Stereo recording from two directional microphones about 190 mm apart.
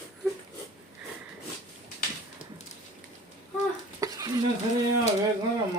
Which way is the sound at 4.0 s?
20° right (ahead or behind).